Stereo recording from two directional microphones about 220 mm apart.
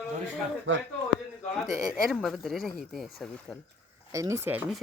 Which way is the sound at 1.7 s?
15° right (ahead or behind).